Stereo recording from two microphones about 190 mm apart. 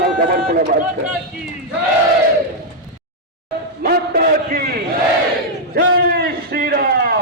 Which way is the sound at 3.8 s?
55° right (ahead or behind).